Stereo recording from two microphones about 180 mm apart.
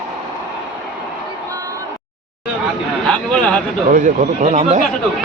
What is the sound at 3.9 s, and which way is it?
Speech, 45° right (ahead or behind).